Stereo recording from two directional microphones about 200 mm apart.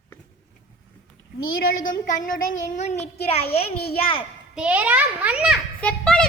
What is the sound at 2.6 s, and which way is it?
Child singing, 35° left (ahead or behind).